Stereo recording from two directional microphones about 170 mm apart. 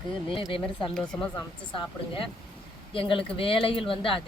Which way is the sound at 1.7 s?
30° left (ahead or behind).